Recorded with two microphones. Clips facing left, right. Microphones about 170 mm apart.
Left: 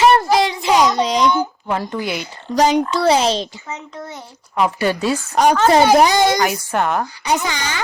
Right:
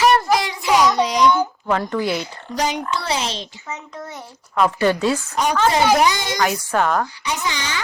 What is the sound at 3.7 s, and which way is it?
A child's voice, 20° left (ahead or behind).